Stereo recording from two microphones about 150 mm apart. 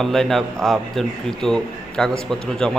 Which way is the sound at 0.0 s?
Centre (ahead or behind).